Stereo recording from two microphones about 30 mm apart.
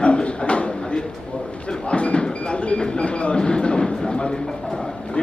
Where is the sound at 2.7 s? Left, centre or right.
Left.